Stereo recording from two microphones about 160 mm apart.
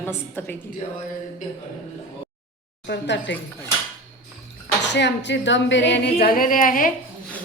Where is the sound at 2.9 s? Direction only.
90° left.